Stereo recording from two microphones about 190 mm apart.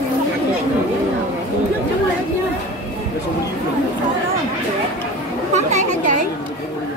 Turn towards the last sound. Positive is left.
turn(degrees=-40)  # may be behind; listen again after turning